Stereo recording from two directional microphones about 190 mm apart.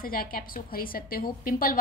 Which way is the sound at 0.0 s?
50° left (ahead or behind).